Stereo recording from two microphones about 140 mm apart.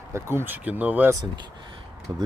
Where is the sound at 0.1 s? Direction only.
15° right (ahead or behind).